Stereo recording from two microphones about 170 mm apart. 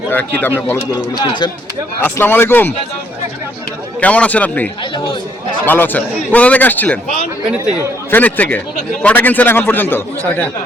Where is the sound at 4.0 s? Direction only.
10° left (ahead or behind).